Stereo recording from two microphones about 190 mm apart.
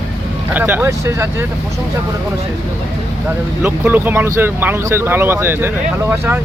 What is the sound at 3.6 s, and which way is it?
Speech, 10° right (ahead or behind).